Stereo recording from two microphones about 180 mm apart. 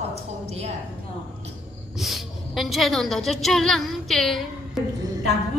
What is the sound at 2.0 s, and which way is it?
A woman's voice, centre (ahead or behind).